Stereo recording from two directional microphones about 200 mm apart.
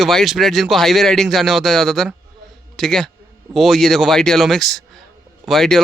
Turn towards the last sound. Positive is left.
turn(degrees=0)  # may be behind; listen again after turning